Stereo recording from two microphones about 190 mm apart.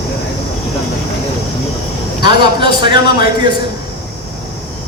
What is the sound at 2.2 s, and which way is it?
Speech, 25° right (ahead or behind).